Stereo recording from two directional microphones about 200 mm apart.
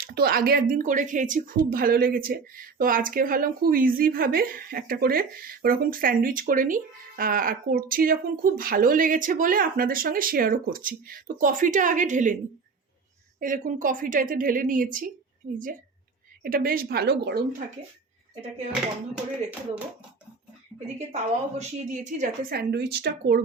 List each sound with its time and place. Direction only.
0.0 s a woman's voice: 50° right (ahead or behind)
13.4 s a woman's voice: 40° right (ahead or behind)
16.4 s a woman's voice: 45° right (ahead or behind)
18.7 s speech: 5° right (ahead or behind)
20.7 s a woman's voice: 35° right (ahead or behind); by 23.4 s 55° right (ahead or behind)